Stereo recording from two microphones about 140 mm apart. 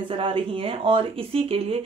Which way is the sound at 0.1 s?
40° right (ahead or behind).